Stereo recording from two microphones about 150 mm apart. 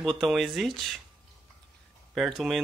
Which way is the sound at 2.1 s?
Centre (ahead or behind).